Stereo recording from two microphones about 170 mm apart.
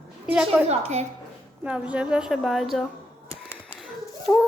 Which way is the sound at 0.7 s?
40° right (ahead or behind).